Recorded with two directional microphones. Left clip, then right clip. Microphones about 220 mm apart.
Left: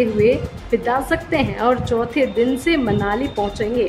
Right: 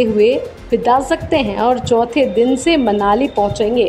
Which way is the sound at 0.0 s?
15° right (ahead or behind).